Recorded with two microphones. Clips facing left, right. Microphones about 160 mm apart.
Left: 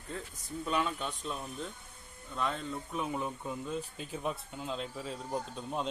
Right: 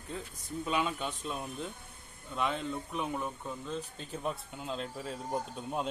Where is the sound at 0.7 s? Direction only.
5° right (ahead or behind).